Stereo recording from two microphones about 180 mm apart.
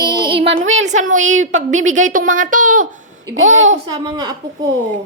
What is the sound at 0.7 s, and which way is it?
A woman's voice, 40° right (ahead or behind).